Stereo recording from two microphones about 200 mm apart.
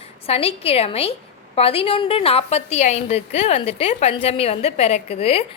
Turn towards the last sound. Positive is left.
turn(degrees=30)  # may be behind; listen again after turning